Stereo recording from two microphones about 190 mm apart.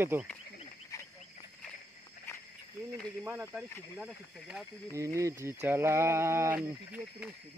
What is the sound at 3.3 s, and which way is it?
Speech, 10° right (ahead or behind).